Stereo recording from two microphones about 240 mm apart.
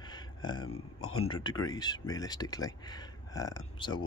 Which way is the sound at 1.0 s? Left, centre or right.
Left.